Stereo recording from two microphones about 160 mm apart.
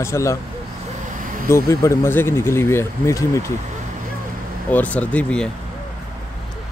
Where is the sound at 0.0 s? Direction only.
20° left (ahead or behind).